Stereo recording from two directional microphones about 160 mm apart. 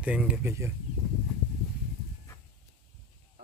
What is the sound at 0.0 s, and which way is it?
Speech, 10° right (ahead or behind).